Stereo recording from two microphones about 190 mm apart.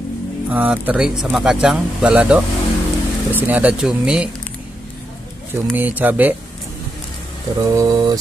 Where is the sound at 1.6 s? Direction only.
5° right (ahead or behind).